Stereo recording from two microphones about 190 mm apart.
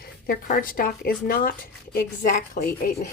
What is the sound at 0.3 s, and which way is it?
Speech, 50° left (ahead or behind).